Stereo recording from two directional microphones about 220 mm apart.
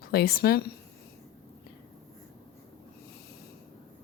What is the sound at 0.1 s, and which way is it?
Speech, 45° left (ahead or behind).